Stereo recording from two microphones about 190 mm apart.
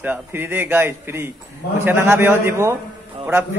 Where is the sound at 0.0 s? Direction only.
10° right (ahead or behind).